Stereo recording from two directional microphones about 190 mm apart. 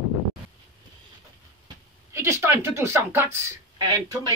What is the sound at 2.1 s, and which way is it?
Speech, 15° right (ahead or behind).